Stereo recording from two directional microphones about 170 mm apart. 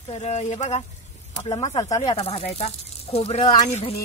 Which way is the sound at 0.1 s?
40° left (ahead or behind).